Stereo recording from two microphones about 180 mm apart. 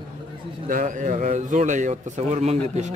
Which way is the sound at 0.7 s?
45° right (ahead or behind).